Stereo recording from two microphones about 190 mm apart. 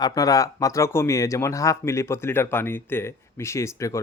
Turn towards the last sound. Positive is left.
turn(degrees=15)  # may be behind; listen again after turning